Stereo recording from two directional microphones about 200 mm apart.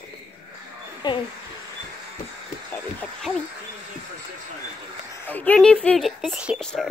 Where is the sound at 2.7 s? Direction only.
10° left (ahead or behind).